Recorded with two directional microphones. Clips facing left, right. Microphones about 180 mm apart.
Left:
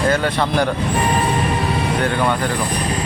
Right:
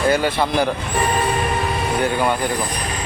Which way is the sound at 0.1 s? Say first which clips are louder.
Even; 5° right (ahead or behind).